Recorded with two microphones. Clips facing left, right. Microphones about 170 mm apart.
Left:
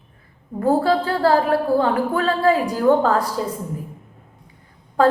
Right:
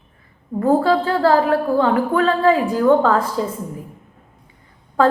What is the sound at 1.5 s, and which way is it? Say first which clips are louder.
A woman's voice: right 1 dB; 40° left (ahead or behind).